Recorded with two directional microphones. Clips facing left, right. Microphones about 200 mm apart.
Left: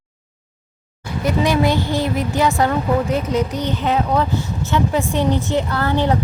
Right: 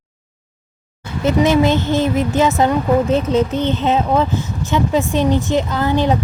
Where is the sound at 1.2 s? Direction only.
25° right (ahead or behind).